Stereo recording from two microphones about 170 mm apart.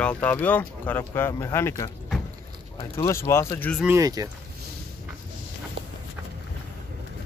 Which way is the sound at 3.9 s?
20° right (ahead or behind).